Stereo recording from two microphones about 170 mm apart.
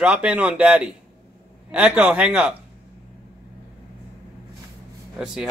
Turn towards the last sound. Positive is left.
turn(degrees=-5)  # may be behind; listen again after turning